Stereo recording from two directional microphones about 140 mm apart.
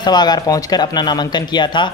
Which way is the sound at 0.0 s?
30° left (ahead or behind).